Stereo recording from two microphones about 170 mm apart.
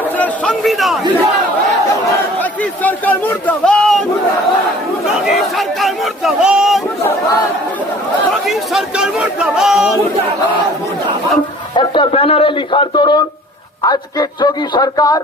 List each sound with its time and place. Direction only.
0.2 s a man's voice: 5° left (ahead or behind)
2.4 s a man's voice: 10° left (ahead or behind)
5.2 s chatter: centre (ahead or behind)
8.4 s a man's voice: centre (ahead or behind)
11.7 s speech: 30° left (ahead or behind)